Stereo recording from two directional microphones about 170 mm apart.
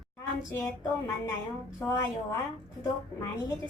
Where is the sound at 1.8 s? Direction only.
15° left (ahead or behind).